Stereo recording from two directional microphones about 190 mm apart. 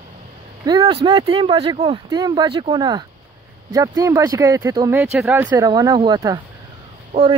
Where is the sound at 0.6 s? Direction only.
20° right (ahead or behind).